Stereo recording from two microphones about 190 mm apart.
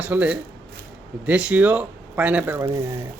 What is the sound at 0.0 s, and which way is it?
A man's voice, 5° right (ahead or behind).